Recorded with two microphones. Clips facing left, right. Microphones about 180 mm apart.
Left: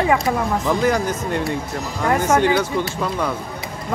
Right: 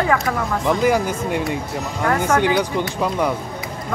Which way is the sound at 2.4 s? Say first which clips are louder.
Left 1 dB; 15° right (ahead or behind).